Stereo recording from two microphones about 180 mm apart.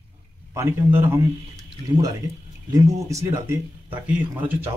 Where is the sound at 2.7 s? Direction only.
15° right (ahead or behind).